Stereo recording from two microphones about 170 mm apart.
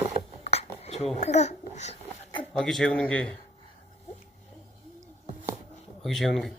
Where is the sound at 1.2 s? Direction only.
40° left (ahead or behind).